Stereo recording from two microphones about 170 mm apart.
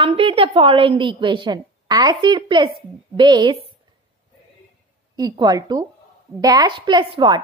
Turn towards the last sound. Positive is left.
turn(degrees=-30)  # may be behind; listen again after turning